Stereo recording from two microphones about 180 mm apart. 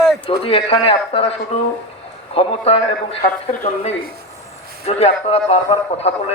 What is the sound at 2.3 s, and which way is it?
A man's voice, 30° left (ahead or behind).